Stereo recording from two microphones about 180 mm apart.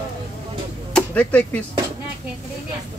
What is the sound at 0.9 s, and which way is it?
Speech, 5° left (ahead or behind).